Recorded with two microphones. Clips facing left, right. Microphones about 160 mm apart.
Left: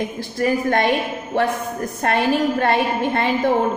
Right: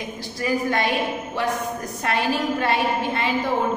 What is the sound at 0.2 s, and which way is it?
A woman's voice, 55° left (ahead or behind).